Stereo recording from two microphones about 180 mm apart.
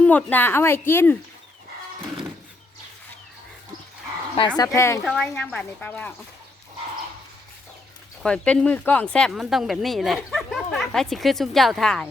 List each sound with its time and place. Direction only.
0.0 s speech: 10° left (ahead or behind)
4.4 s speech: 25° left (ahead or behind)
5.0 s speech: 5° left (ahead or behind)
8.2 s speech: 5° left (ahead or behind)